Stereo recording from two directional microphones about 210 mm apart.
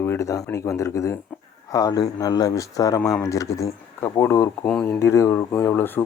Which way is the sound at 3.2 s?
15° left (ahead or behind).